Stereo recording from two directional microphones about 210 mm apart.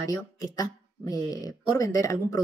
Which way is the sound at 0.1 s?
15° left (ahead or behind).